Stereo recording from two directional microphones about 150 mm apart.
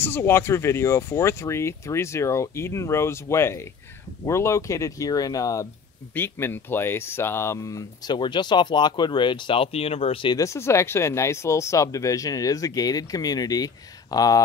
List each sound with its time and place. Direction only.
0.0 s speech: 15° left (ahead or behind); by 10.3 s 40° left (ahead or behind)
10.3 s speech: 20° left (ahead or behind)